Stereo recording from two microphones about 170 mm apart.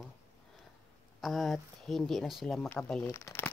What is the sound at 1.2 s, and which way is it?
Speech, centre (ahead or behind).